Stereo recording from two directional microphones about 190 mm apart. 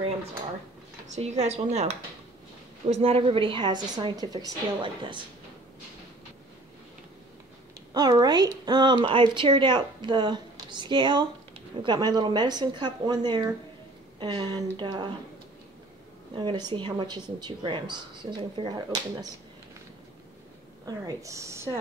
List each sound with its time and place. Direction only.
1.0 s a woman's voice: 35° right (ahead or behind)
7.9 s speech: 20° right (ahead or behind)
16.3 s speech: 20° right (ahead or behind)
20.8 s speech: 20° right (ahead or behind)